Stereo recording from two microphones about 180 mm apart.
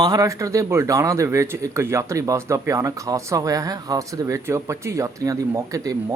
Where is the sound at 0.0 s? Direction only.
20° right (ahead or behind).